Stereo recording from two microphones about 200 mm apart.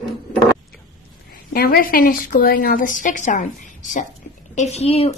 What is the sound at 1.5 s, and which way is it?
A woman's voice, 45° left (ahead or behind).